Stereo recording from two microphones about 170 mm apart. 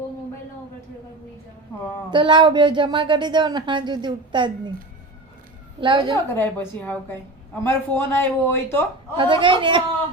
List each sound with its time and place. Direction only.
2.0 s speech: 30° right (ahead or behind)
5.8 s speech: 30° right (ahead or behind)
6.3 s a woman's voice: 10° left (ahead or behind)
9.1 s speech: 30° right (ahead or behind)